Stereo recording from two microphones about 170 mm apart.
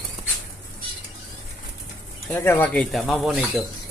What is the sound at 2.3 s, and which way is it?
Speech, 10° left (ahead or behind).